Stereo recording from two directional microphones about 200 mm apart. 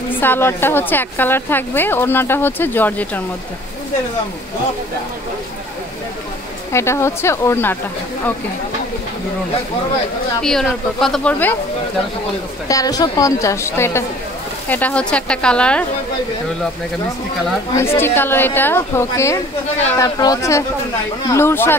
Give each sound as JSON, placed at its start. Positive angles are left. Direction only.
{"t": 0.2, "sound": "a woman's voice", "side_deg": 10}
{"t": 6.7, "sound": "a woman's voice", "side_deg": 15}
{"t": 10.4, "sound": "a woman's voice", "side_deg": 0}
{"t": 12.6, "sound": "a woman's voice", "side_deg": 20}
{"t": 17.7, "sound": "a woman's voice", "side_deg": 10}